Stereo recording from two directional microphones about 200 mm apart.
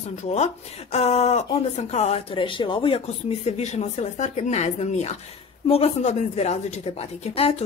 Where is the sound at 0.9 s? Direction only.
35° left (ahead or behind).